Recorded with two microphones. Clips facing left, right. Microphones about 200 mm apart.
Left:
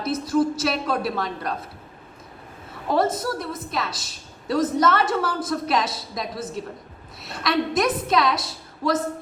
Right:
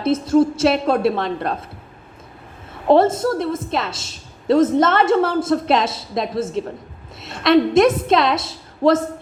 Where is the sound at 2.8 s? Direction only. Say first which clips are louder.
Right 8 dB; 25° right (ahead or behind).